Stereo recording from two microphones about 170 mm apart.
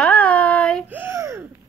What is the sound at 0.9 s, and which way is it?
Speech, 10° right (ahead or behind).